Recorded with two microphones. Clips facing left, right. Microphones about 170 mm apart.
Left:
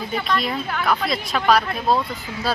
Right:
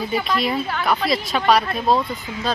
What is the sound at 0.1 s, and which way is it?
Speech, centre (ahead or behind).